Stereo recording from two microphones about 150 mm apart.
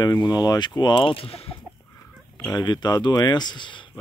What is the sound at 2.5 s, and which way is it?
Speech, 30° left (ahead or behind).